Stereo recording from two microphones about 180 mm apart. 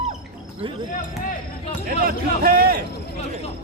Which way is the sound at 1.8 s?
55° right (ahead or behind).